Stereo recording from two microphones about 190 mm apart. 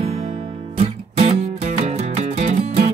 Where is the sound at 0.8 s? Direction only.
35° right (ahead or behind).